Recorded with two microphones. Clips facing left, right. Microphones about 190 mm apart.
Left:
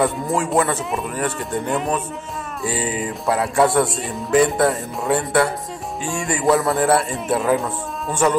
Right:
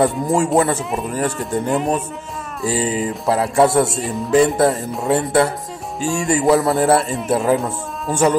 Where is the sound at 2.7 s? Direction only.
30° right (ahead or behind).